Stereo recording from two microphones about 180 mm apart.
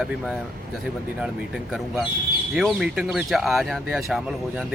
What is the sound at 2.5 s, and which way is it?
Speech, centre (ahead or behind).